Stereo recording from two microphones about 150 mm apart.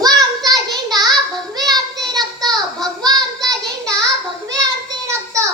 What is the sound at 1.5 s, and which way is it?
Child singing, 25° right (ahead or behind).